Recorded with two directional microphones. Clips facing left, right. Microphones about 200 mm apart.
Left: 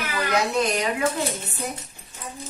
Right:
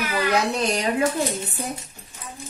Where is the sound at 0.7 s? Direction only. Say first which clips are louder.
Right 2 dB; 30° right (ahead or behind).